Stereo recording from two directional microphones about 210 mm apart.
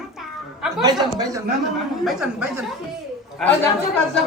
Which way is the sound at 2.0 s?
Centre (ahead or behind).